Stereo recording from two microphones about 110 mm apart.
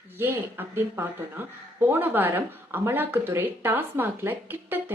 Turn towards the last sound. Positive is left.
turn(degrees=-15)  # may be behind; listen again after turning